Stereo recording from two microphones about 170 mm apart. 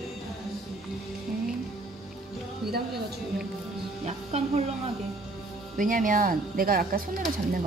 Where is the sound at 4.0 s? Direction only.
40° right (ahead or behind).